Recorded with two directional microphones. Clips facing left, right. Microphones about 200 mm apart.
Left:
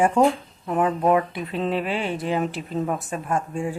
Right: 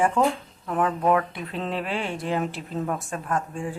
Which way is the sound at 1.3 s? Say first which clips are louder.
Left 4 dB; centre (ahead or behind).